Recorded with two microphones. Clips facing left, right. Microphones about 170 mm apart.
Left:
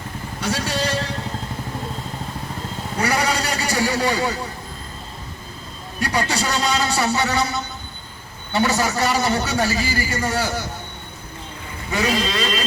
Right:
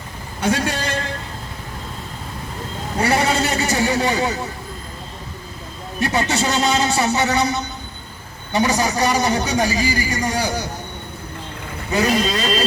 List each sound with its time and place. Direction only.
0.4 s a man's voice: 60° right (ahead or behind)
3.0 s a man's voice: 25° right (ahead or behind)
6.0 s a man's voice: 25° right (ahead or behind)
12.2 s speech: 40° right (ahead or behind)